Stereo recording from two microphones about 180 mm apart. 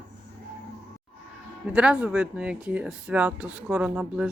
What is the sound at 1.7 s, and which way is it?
Speech, 5° right (ahead or behind).